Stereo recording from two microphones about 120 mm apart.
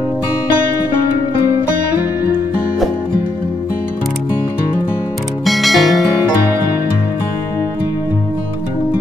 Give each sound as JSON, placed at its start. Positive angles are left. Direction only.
{"t": 5.4, "sound": "music", "side_deg": 0}